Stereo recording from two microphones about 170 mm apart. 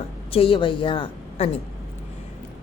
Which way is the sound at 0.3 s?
35° left (ahead or behind).